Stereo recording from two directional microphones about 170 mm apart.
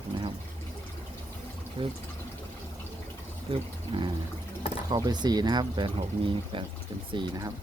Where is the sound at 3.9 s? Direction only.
25° right (ahead or behind).